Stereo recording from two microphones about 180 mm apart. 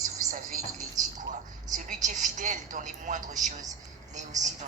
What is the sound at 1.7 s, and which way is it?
A woman's voice, 45° right (ahead or behind).